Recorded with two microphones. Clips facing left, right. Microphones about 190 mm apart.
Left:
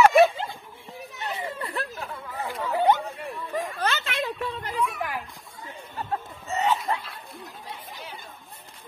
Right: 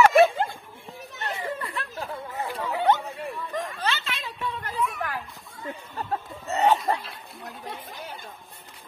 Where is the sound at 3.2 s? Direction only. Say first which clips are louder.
Left 1 dB; 10° left (ahead or behind).